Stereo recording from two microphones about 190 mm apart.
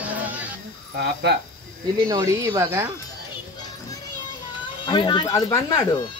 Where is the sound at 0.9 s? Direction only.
60° right (ahead or behind).